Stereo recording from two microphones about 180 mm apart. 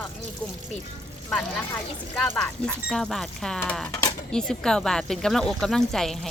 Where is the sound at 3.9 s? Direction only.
20° left (ahead or behind).